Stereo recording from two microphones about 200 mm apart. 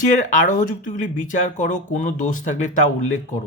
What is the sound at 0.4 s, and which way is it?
Speech, 40° left (ahead or behind).